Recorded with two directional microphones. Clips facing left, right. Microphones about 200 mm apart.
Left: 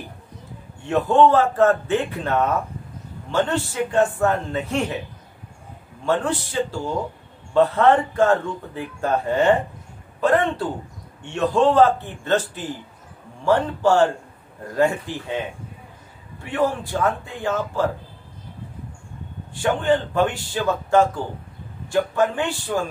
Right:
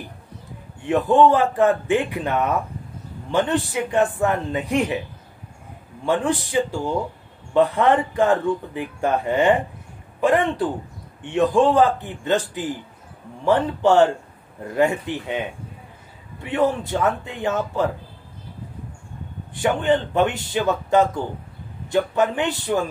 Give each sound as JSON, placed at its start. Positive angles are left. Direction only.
{"t": 0.8, "sound": "a man's voice", "side_deg": -15}
{"t": 6.0, "sound": "a man's voice", "side_deg": -15}
{"t": 16.4, "sound": "a man's voice", "side_deg": -20}
{"t": 19.5, "sound": "a man's voice", "side_deg": -20}